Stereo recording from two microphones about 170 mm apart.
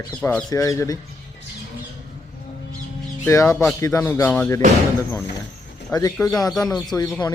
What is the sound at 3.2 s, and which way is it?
Speech, 15° left (ahead or behind).